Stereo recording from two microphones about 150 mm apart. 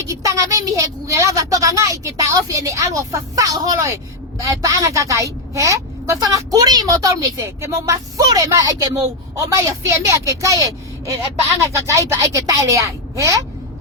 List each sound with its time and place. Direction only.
0.0 s a woman's voice: 20° right (ahead or behind)